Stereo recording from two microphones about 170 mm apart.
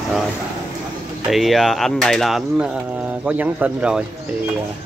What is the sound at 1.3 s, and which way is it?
Speech, centre (ahead or behind).